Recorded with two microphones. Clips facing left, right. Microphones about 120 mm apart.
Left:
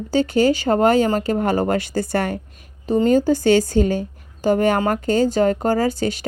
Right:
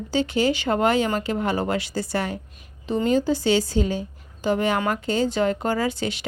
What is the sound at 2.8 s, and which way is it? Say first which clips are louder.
A woman's voice: left 5 dB; 40° left (ahead or behind).